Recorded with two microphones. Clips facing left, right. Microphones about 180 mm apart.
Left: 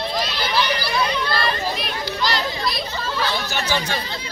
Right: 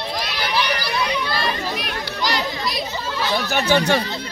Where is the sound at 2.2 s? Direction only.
15° right (ahead or behind).